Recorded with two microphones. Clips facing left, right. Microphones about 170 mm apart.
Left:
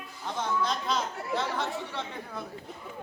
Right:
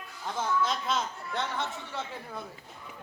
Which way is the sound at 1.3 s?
Centre (ahead or behind).